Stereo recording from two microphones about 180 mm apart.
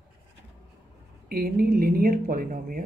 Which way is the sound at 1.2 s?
55° right (ahead or behind).